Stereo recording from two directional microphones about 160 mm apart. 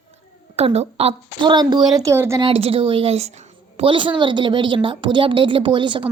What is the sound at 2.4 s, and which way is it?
A woman's voice, 35° right (ahead or behind).